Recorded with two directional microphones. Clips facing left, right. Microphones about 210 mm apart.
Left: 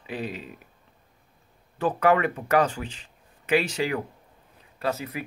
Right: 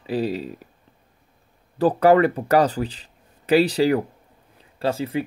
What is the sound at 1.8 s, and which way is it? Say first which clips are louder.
Speech: right 6 dB; 35° right (ahead or behind).